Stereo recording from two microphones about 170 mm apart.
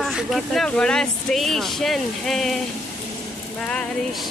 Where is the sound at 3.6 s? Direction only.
5° left (ahead or behind).